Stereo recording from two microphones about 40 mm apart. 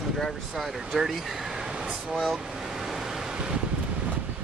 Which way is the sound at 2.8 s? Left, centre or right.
Centre.